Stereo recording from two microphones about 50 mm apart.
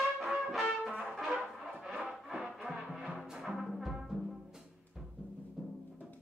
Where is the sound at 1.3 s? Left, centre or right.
Centre.